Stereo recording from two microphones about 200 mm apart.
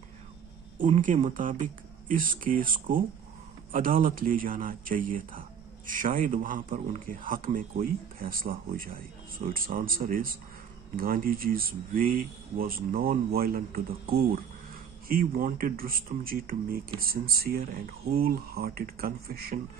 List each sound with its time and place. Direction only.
0.9 s speech: 40° right (ahead or behind)